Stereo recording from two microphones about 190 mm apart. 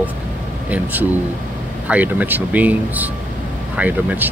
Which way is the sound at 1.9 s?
10° right (ahead or behind).